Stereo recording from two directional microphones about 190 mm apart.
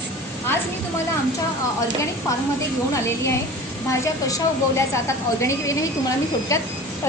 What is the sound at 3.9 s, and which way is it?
A woman's voice, 15° left (ahead or behind).